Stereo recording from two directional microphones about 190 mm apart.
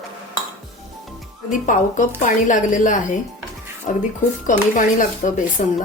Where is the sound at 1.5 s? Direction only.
40° left (ahead or behind).